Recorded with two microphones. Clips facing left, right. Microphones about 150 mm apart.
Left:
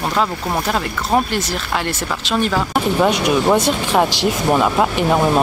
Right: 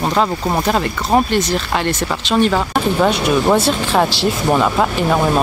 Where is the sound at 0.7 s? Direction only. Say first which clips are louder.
Right 3 dB; centre (ahead or behind).